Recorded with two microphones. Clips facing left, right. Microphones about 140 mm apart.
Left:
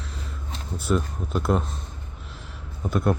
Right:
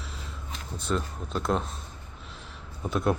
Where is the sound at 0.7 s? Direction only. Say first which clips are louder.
Left 5 dB; 5° left (ahead or behind).